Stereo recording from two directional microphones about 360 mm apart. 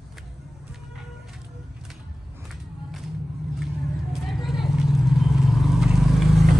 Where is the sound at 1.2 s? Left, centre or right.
Centre.